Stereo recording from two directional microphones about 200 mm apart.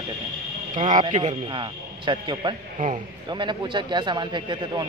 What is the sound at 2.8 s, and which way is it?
Speech, 40° right (ahead or behind).